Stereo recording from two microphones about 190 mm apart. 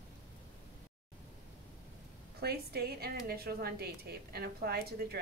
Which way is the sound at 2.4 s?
55° right (ahead or behind).